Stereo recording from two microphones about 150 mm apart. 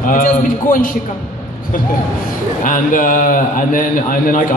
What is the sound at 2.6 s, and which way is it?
A man's voice, 65° left (ahead or behind).